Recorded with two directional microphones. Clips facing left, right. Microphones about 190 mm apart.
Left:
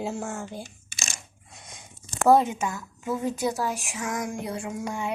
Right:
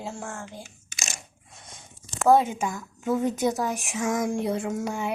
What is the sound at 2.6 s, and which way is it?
Speech, 15° right (ahead or behind).